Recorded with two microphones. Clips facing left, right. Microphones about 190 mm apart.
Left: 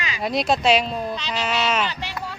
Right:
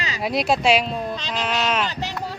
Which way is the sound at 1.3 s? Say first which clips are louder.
Even; 5° left (ahead or behind).